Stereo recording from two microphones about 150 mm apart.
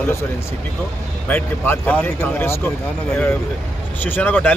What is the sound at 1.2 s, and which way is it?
Speech, 10° left (ahead or behind).